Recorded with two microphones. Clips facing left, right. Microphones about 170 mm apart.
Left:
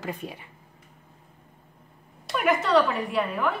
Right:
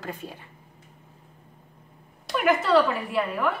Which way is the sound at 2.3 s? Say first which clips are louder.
Right 1 dB; centre (ahead or behind).